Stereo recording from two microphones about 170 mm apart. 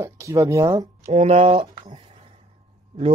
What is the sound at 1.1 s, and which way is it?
Speech, 40° right (ahead or behind).